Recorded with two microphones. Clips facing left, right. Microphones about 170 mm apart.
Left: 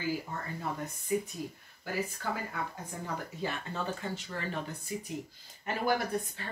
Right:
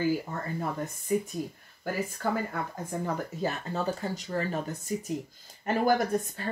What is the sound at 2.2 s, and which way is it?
Speech, 55° right (ahead or behind).